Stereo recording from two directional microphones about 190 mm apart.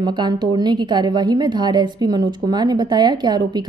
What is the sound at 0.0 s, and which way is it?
A woman's voice, 25° right (ahead or behind).